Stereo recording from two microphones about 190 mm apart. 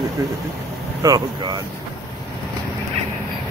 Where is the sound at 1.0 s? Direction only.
20° right (ahead or behind).